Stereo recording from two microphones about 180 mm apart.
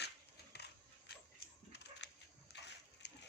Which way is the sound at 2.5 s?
75° left (ahead or behind).